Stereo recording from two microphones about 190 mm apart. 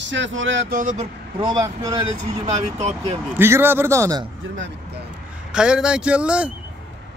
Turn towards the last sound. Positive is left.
turn(degrees=-5)  # may be behind; listen again after turning